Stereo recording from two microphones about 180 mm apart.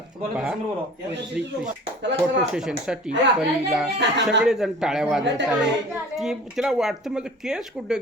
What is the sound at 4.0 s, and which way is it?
Speech, 80° right.